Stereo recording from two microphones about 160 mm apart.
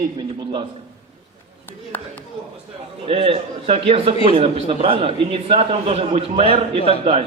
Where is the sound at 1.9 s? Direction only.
10° left (ahead or behind).